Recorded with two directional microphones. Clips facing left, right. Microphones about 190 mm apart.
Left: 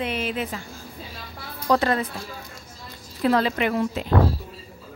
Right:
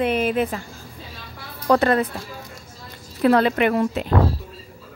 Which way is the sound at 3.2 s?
65° right (ahead or behind).